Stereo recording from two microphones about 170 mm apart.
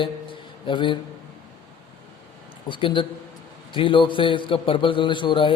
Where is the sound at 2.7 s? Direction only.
30° left (ahead or behind).